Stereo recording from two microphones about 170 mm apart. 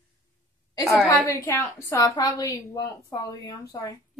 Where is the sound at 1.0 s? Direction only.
15° left (ahead or behind).